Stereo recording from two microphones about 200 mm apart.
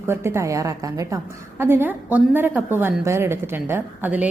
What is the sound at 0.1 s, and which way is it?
A woman's voice, 15° right (ahead or behind).